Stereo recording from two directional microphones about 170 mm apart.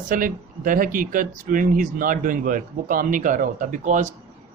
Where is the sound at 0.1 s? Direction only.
55° right (ahead or behind).